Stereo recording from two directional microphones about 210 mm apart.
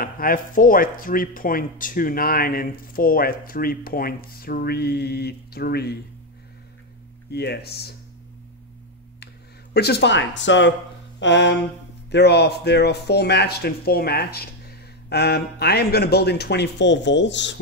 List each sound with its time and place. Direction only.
0.0 s speech: 40° left (ahead or behind)
7.2 s speech: 50° left (ahead or behind)
9.8 s speech: 50° left (ahead or behind)
11.1 s a sound: 60° left (ahead or behind)
12.1 s speech: 50° left (ahead or behind)